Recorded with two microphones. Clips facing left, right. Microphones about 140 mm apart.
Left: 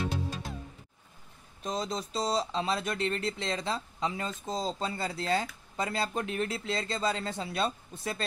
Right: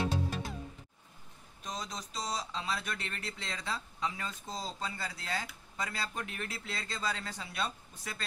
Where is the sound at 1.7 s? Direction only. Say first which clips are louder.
Left 8 dB; 25° left (ahead or behind).